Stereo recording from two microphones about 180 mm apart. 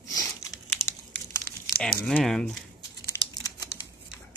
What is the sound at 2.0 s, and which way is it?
Speech, 5° left (ahead or behind).